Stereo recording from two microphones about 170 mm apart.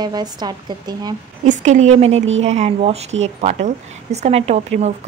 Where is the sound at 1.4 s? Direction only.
45° right (ahead or behind).